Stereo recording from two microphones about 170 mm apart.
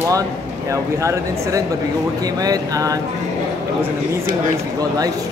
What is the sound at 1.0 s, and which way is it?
A man's voice, 20° right (ahead or behind).